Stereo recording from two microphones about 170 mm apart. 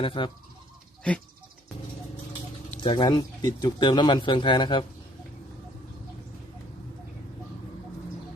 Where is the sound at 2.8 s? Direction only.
30° left (ahead or behind).